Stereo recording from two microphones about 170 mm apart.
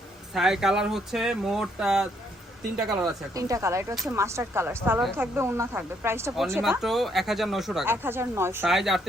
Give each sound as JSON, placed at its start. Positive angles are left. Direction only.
{"t": 0.3, "sound": "speech", "side_deg": -5}
{"t": 3.3, "sound": "speech", "side_deg": -20}
{"t": 6.6, "sound": "speech", "side_deg": 0}
{"t": 8.0, "sound": "speech", "side_deg": -15}
{"t": 8.6, "sound": "speech", "side_deg": 0}